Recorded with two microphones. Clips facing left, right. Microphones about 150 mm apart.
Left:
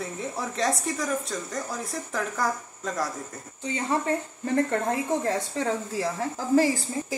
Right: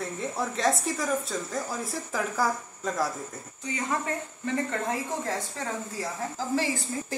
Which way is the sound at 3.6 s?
30° left (ahead or behind).